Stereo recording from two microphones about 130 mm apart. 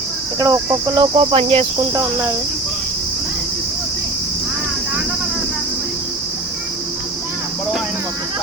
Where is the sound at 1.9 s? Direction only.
20° right (ahead or behind).